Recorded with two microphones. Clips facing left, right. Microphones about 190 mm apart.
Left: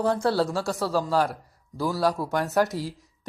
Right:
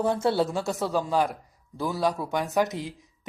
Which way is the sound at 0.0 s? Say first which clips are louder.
Left 1 dB; 20° right (ahead or behind).